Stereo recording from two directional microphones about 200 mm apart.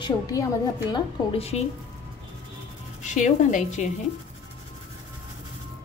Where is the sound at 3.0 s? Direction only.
35° left (ahead or behind).